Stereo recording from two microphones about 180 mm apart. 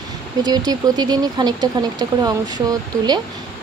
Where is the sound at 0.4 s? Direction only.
20° right (ahead or behind).